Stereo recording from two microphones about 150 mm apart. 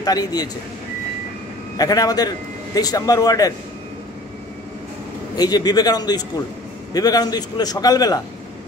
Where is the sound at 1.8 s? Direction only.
25° left (ahead or behind).